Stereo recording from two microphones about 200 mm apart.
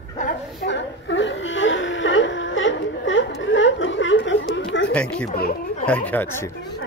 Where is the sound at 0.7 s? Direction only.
65° left (ahead or behind).